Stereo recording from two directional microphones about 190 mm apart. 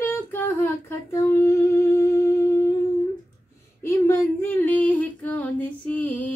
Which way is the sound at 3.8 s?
15° left (ahead or behind).